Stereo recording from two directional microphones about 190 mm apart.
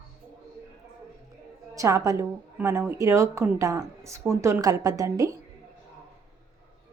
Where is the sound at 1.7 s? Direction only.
15° right (ahead or behind).